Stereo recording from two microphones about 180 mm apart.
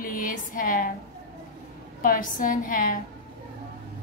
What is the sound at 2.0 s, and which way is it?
A woman's voice, 50° left (ahead or behind).